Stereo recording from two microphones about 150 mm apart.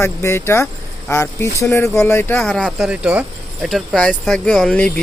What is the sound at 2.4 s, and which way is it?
Speech, 5° left (ahead or behind).